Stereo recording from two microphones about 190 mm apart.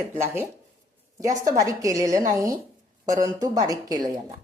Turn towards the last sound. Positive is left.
turn(degrees=-20)  # may be behind; listen again after turning